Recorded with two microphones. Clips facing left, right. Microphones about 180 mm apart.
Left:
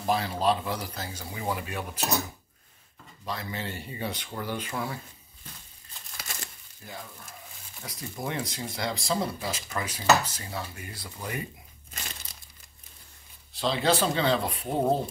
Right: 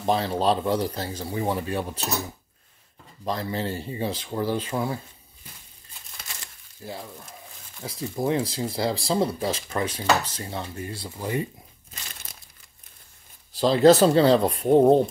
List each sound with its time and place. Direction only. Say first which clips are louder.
0.0 s a man's voice: right 3 dB; 30° right (ahead or behind)
3.3 s speech: right 7 dB; 35° right (ahead or behind)
6.8 s frying: right 6 dB; 30° right (ahead or behind)
7.8 s speech: right 8 dB; 30° right (ahead or behind)
13.6 s a man's voice: right 10 dB; 40° right (ahead or behind)